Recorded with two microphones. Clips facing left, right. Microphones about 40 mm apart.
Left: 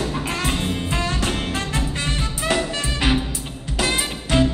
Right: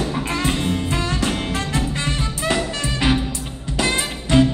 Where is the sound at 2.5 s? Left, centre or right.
Centre.